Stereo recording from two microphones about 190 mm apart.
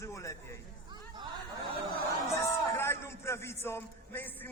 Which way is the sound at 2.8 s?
15° left (ahead or behind).